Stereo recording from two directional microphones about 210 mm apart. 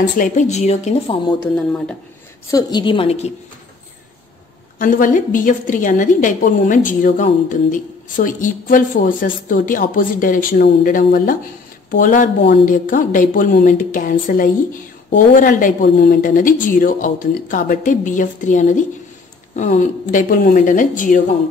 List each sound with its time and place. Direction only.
0.2 s speech: 35° left (ahead or behind)
1.6 s speech: 5° left (ahead or behind)
2.5 s a woman's voice: 20° left (ahead or behind)
4.7 s speech: 40° left (ahead or behind)